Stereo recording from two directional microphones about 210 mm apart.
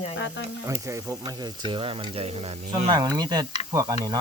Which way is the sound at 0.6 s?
15° right (ahead or behind).